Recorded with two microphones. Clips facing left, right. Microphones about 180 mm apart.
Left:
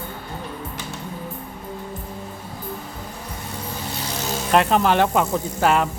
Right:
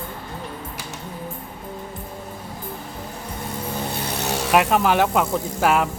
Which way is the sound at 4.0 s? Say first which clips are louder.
Left 1 dB; 65° right (ahead or behind).